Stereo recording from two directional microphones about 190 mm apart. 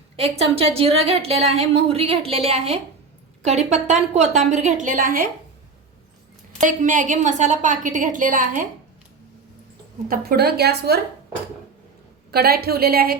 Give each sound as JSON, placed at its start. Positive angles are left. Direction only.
{"t": 0.2, "sound": "a woman's voice", "side_deg": -30}
{"t": 6.6, "sound": "a woman's voice", "side_deg": -40}
{"t": 10.1, "sound": "a woman's voice", "side_deg": -55}
{"t": 12.3, "sound": "a woman's voice", "side_deg": -55}